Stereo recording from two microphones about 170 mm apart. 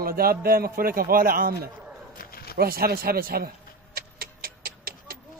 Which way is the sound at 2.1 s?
60° left (ahead or behind).